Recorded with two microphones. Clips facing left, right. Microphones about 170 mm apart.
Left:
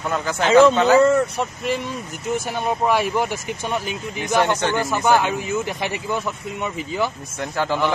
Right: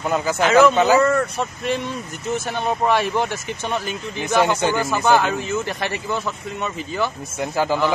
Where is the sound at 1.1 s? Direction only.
15° left (ahead or behind).